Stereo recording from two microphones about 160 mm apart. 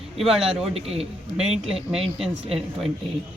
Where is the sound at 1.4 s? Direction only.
5° right (ahead or behind).